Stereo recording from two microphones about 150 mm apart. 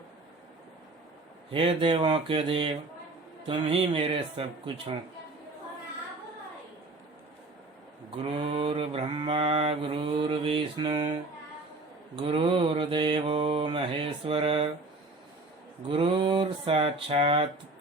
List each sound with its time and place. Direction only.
1.5 s mantra: 35° right (ahead or behind)
8.1 s mantra: 40° right (ahead or behind)
12.1 s mantra: 35° right (ahead or behind)
15.9 s mantra: 35° right (ahead or behind)